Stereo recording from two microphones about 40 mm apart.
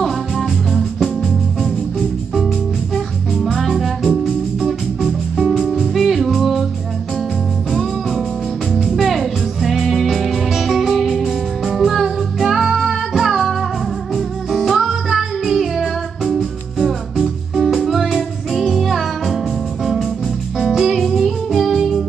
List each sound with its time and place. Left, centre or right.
0.7 s music: centre
3.5 s music: centre
4.2 s organ: centre
5.5 s music: centre
8.7 s music: centre